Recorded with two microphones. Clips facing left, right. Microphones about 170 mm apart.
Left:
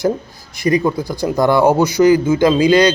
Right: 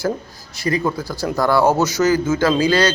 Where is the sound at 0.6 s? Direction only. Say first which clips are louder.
Left 5 dB; 15° left (ahead or behind).